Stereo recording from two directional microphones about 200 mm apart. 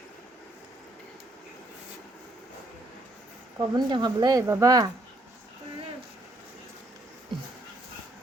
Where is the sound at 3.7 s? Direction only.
20° right (ahead or behind).